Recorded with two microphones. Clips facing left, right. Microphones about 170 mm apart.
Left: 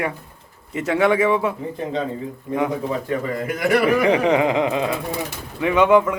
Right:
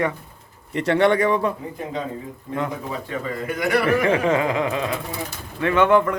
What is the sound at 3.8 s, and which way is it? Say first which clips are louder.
Speech: left 2 dB; 10° left (ahead or behind).